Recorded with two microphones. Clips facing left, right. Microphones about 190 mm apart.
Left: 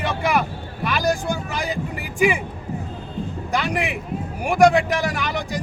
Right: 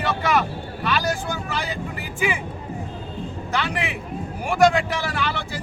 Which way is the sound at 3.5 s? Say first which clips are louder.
Left 3 dB; 15° left (ahead or behind).